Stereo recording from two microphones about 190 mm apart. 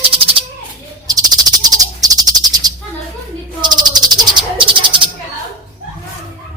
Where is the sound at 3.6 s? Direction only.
20° right (ahead or behind).